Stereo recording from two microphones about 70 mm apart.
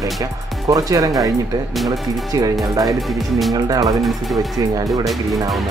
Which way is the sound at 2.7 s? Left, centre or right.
Right.